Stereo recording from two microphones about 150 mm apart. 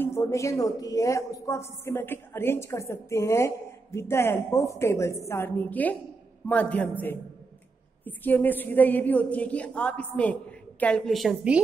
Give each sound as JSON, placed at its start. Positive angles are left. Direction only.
{"t": 0.0, "sound": "a woman's voice", "side_deg": 20}